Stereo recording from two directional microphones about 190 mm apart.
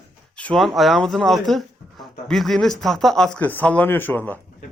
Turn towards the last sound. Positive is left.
turn(degrees=10)  # may be behind; listen again after turning